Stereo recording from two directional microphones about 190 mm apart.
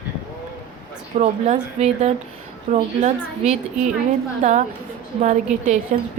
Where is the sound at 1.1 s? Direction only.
35° right (ahead or behind).